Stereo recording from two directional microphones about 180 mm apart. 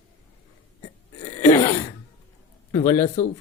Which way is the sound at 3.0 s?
40° left (ahead or behind).